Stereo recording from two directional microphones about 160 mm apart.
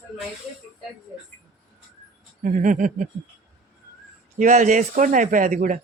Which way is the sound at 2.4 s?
55° right (ahead or behind).